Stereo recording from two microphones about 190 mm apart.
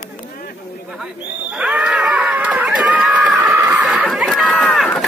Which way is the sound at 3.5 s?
5° right (ahead or behind).